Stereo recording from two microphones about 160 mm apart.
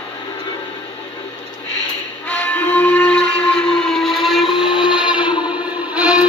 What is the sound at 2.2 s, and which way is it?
Train, 10° left (ahead or behind).